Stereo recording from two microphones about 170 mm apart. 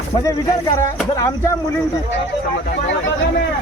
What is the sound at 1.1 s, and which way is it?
Speech, 20° left (ahead or behind).